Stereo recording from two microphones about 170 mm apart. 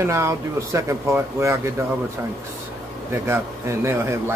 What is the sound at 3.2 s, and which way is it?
Speech, 15° right (ahead or behind).